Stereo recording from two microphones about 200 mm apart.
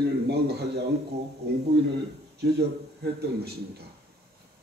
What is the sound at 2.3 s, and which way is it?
Speech, 55° right (ahead or behind).